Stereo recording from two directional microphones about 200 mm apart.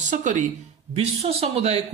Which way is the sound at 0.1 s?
40° right (ahead or behind).